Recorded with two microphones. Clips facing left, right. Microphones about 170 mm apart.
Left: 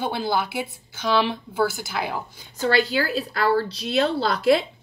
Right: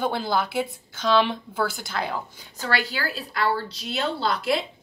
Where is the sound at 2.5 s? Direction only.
25° left (ahead or behind).